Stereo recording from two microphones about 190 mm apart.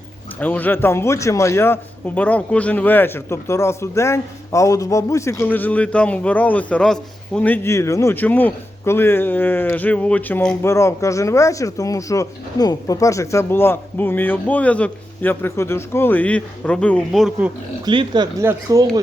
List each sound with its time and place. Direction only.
0.3 s a man's voice: 10° left (ahead or behind)
17.8 s speech: 25° right (ahead or behind)